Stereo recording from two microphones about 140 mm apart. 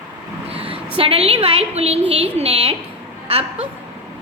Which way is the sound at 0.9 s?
45° right (ahead or behind).